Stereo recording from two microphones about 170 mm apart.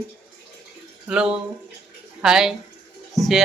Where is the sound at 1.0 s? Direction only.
5° right (ahead or behind).